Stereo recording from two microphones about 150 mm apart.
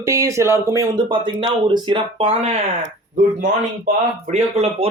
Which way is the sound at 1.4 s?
30° right (ahead or behind).